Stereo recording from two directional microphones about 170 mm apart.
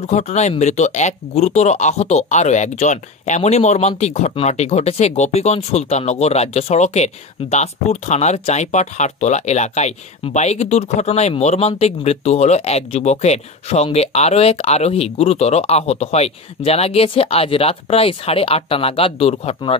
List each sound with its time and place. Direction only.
0.0 s speech: 40° left (ahead or behind)